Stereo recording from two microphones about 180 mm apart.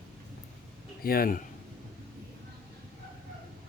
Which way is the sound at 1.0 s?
55° left (ahead or behind).